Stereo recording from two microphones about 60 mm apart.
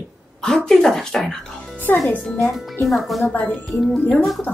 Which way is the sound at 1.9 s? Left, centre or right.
Left.